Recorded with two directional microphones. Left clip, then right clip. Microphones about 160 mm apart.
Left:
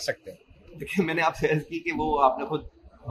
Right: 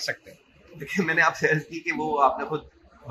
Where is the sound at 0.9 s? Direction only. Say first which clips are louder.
Right 3 dB; 45° left (ahead or behind).